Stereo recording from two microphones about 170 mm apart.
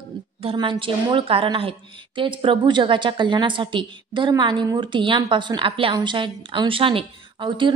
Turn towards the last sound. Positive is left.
turn(degrees=-30)  # may be behind; listen again after turning